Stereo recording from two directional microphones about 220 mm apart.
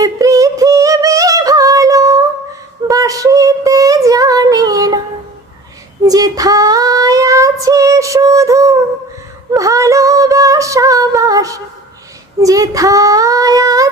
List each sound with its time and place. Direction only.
0.0 s yodeling: 15° right (ahead or behind)
2.8 s female singing: 15° right (ahead or behind)
6.1 s female singing: 15° right (ahead or behind)
12.4 s child singing: 15° right (ahead or behind)